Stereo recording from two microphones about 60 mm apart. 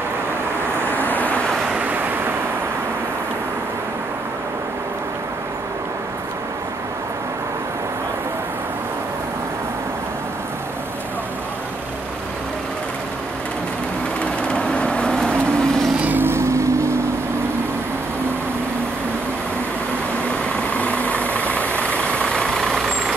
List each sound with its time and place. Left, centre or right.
0.7 s vehicle: right
1.0 s vehicle: left
1.8 s waves: right
14.2 s vehicle: centre
16.0 s vehicle: right
16.3 s vehicle: right
20.7 s vehicle: left; by 23.1 s centre